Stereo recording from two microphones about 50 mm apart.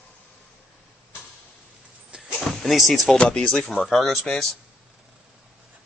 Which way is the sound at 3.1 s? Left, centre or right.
Centre.